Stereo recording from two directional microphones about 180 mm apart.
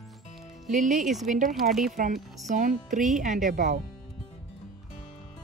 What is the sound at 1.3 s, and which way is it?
Speech, 45° right (ahead or behind).